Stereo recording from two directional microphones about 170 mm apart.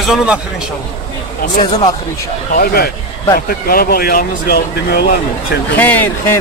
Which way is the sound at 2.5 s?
65° left (ahead or behind).